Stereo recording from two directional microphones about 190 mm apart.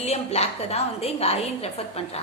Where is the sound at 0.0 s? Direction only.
35° left (ahead or behind).